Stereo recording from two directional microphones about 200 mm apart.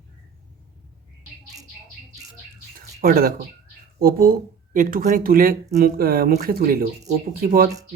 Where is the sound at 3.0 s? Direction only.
45° right (ahead or behind).